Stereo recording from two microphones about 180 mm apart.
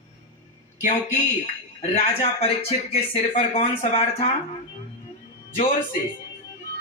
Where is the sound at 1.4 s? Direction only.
35° left (ahead or behind).